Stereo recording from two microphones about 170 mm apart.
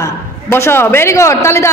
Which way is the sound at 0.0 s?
15° left (ahead or behind).